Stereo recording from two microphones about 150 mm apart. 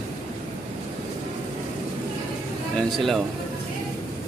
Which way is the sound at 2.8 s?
Centre (ahead or behind).